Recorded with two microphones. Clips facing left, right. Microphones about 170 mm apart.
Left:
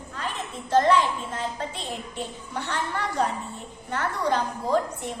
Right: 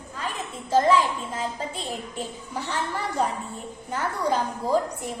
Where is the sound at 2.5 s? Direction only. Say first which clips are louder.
Even; 5° right (ahead or behind).